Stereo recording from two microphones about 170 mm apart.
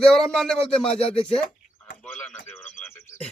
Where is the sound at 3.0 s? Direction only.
15° left (ahead or behind).